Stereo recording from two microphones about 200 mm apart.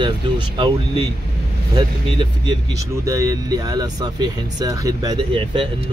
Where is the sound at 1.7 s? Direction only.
20° right (ahead or behind).